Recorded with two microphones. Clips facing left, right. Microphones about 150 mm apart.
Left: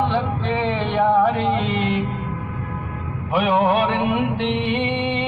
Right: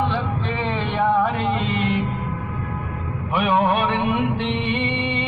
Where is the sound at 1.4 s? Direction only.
90° left.